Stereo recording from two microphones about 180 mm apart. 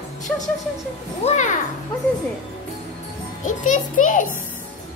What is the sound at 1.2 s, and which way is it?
Speech, 40° left (ahead or behind).